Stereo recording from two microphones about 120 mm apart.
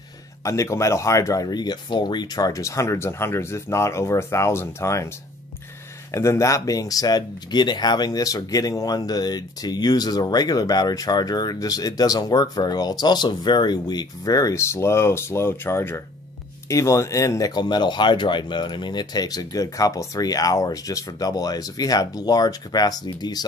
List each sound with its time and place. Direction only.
0.4 s speech: 25° left (ahead or behind)
6.1 s speech: 25° left (ahead or behind)